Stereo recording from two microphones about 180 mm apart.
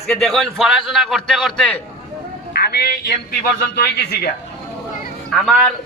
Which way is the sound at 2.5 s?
60° left (ahead or behind).